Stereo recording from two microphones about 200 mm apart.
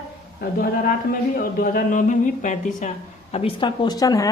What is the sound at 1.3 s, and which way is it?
A woman's voice, 45° left (ahead or behind).